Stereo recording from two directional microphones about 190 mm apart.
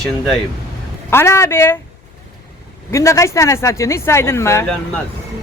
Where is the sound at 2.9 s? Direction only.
15° left (ahead or behind).